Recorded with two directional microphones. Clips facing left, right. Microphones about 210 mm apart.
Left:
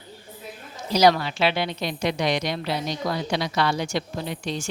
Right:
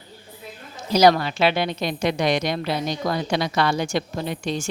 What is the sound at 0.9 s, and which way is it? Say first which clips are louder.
A woman's voice: right 2 dB; 50° right (ahead or behind).